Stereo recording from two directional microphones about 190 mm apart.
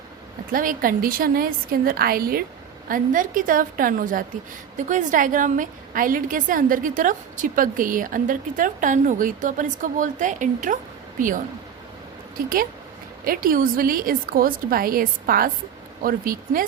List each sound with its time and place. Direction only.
0.5 s a woman's voice: 45° right (ahead or behind)
12.4 s a woman's voice: 50° right (ahead or behind)